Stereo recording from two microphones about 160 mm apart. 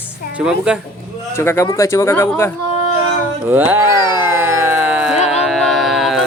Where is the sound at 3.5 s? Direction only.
10° right (ahead or behind).